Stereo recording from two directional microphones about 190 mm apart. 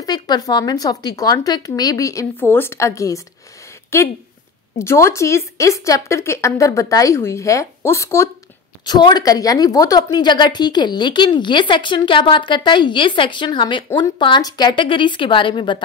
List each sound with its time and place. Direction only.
0.0 s a woman's voice: 20° left (ahead or behind)